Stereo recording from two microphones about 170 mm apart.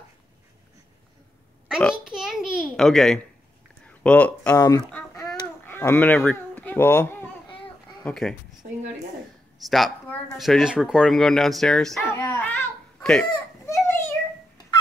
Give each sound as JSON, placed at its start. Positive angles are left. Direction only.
{"t": 1.8, "sound": "a child's voice", "side_deg": 0}
{"t": 4.6, "sound": "speech", "side_deg": 20}
{"t": 4.9, "sound": "a sound", "side_deg": 10}
{"t": 8.0, "sound": "speech", "side_deg": 5}
{"t": 8.6, "sound": "a woman's voice", "side_deg": -50}
{"t": 9.6, "sound": "speech", "side_deg": 0}
{"t": 12.0, "sound": "a child's voice", "side_deg": 15}
{"t": 13.0, "sound": "fowl", "side_deg": 0}
{"t": 13.7, "sound": "a sound", "side_deg": 15}